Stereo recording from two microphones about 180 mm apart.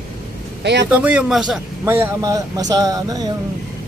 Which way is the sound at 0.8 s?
10° right (ahead or behind).